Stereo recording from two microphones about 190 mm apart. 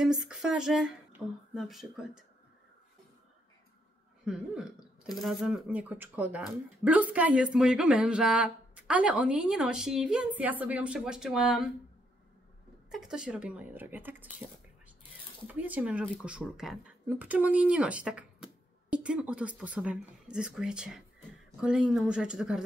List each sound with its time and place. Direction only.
0.0 s speech: 5° right (ahead or behind)
4.2 s speech: 5° right (ahead or behind)
12.9 s a woman's voice: 5° right (ahead or behind)
15.4 s speech: 10° right (ahead or behind)